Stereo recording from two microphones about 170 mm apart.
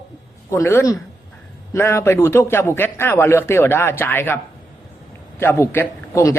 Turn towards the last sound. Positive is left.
turn(degrees=15)  # may be behind; listen again after turning